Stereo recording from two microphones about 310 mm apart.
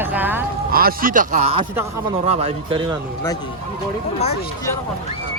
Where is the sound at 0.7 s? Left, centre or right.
Right.